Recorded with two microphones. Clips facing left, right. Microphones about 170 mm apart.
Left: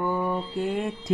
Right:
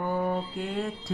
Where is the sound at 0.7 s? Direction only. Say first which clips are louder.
Left 3 dB; 20° left (ahead or behind).